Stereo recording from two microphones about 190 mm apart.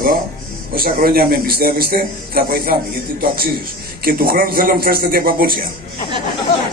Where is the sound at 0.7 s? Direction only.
50° right (ahead or behind).